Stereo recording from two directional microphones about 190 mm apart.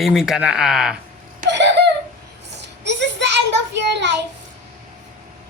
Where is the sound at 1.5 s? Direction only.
65° right (ahead or behind).